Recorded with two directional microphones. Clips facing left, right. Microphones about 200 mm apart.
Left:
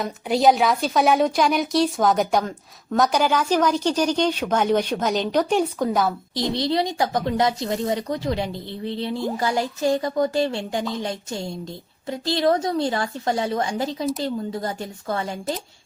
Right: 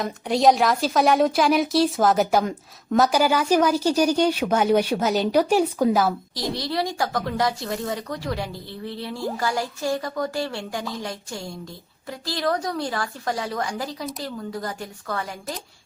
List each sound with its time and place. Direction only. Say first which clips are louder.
0.0 s a woman's voice: even; centre (ahead or behind)
6.6 s speech: left 4 dB; 20° left (ahead or behind)